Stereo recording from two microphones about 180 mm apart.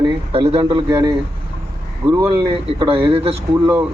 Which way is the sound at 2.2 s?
30° right (ahead or behind).